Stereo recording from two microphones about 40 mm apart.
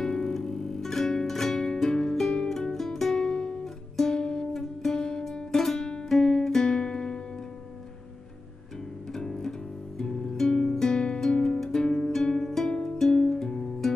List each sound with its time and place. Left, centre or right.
0.0 s music: centre
6.0 s guitar: centre
9.1 s music: centre